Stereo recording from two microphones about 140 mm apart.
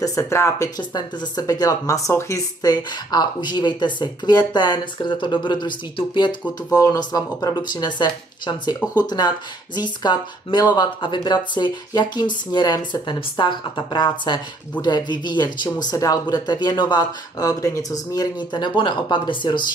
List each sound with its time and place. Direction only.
0.0 s speech: 20° left (ahead or behind)